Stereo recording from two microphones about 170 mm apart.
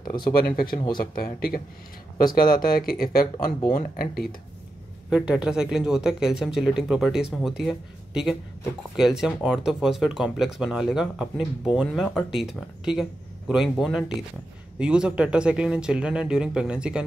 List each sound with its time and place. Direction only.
0.0 s a sound: 25° left (ahead or behind)
0.3 s speech: 60° left (ahead or behind)
2.6 s speech: 60° left (ahead or behind)
5.1 s speech: 5° right (ahead or behind)